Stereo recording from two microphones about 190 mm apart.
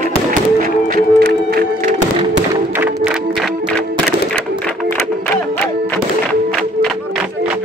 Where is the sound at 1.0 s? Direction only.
55° right (ahead or behind).